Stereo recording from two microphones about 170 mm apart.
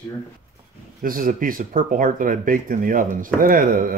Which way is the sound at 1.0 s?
55° right (ahead or behind).